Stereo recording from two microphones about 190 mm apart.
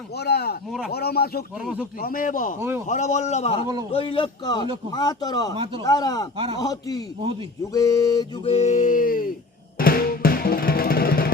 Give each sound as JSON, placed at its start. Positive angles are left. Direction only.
{"t": 0.2, "sound": "speech", "side_deg": 60}
{"t": 1.6, "sound": "speech", "side_deg": -5}
{"t": 2.0, "sound": "a man's voice", "side_deg": 50}
{"t": 2.6, "sound": "a man's voice", "side_deg": -10}
{"t": 2.8, "sound": "a man's voice", "side_deg": 40}
{"t": 6.3, "sound": "a man's voice", "side_deg": -30}
{"t": 6.6, "sound": "a man's voice", "side_deg": 20}
{"t": 8.4, "sound": "a man's voice", "side_deg": 35}
{"t": 9.7, "sound": "music", "side_deg": 50}